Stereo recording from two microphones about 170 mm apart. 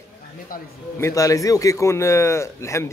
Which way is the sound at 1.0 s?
20° left (ahead or behind).